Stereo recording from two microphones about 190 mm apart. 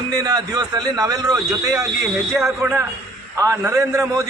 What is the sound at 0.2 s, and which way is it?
A man's voice, 20° right (ahead or behind).